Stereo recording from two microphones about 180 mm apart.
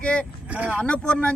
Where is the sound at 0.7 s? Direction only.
5° left (ahead or behind).